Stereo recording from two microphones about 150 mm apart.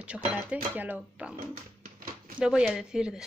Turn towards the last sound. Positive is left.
turn(degrees=-5)  # may be behind; listen again after turning